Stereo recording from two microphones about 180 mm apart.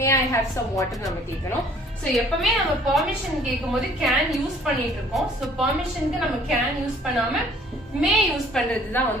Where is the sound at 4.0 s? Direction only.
Centre (ahead or behind).